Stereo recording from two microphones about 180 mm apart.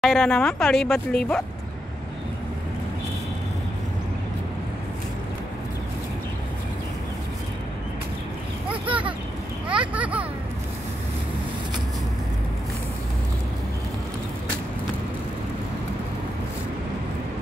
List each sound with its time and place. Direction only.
0.0 s speech: centre (ahead or behind)
8.8 s vehicle: 30° right (ahead or behind)
9.7 s speech: 5° right (ahead or behind)